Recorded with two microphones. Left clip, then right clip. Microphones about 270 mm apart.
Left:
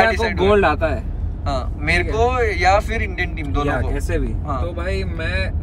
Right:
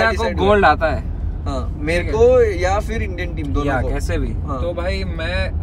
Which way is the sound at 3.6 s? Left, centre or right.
Centre.